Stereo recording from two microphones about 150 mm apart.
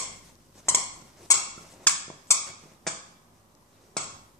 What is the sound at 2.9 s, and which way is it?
Finger snapping, 5° left (ahead or behind).